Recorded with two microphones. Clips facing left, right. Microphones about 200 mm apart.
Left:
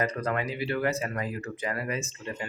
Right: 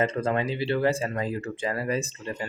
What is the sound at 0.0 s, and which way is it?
Speech, 25° right (ahead or behind).